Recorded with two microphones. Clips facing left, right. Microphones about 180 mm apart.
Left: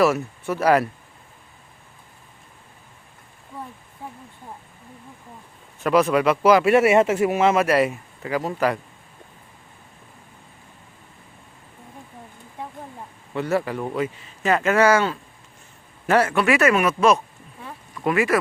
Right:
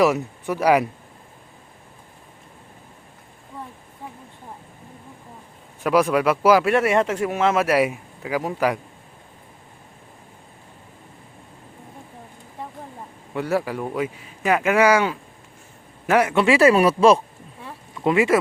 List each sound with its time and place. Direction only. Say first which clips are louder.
0.0 s a man's voice: right 1 dB; 15° right (ahead or behind)
5.8 s speech: even; 10° right (ahead or behind)
13.3 s a man's voice: even; 10° right (ahead or behind)
16.3 s speech: right 3 dB; 25° right (ahead or behind)